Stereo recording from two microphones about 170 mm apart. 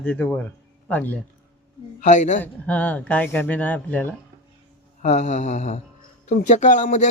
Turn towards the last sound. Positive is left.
turn(degrees=45)  # may be behind; listen again after turning